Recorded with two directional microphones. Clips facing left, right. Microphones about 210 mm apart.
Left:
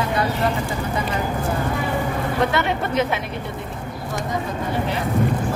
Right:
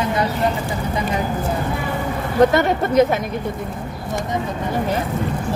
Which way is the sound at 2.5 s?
40° right (ahead or behind).